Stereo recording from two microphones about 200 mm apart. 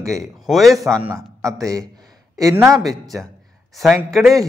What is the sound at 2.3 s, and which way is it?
Speech, 15° right (ahead or behind).